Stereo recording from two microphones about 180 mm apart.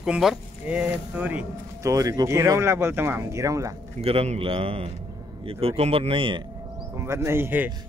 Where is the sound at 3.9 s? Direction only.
35° right (ahead or behind).